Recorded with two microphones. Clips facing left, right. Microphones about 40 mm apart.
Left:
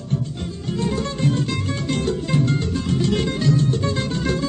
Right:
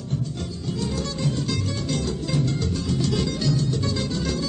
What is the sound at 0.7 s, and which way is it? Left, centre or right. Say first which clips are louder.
Music: left 5 dB; left.